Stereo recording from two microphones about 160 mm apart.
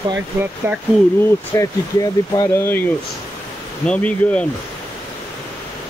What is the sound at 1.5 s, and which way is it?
Speech, 20° left (ahead or behind).